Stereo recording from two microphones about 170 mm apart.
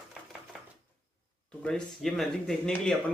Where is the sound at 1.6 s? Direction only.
5° left (ahead or behind).